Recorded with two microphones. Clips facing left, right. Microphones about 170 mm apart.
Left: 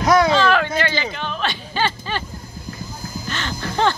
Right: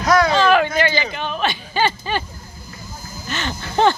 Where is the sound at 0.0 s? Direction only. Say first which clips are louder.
Left 1 dB; 20° left (ahead or behind).